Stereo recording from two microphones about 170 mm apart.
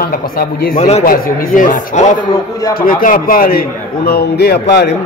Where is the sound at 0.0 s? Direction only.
60° left (ahead or behind).